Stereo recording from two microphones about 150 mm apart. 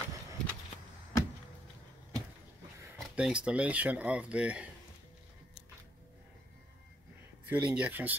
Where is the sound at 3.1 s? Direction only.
5° right (ahead or behind).